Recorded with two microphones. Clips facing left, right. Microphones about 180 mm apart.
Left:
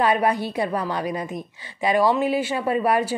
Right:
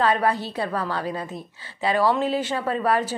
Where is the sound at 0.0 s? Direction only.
15° left (ahead or behind).